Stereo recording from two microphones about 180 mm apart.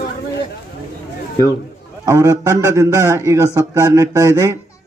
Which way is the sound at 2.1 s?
15° right (ahead or behind).